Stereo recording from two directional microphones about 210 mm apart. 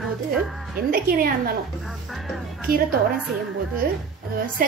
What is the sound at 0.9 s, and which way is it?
Speech, 45° right (ahead or behind).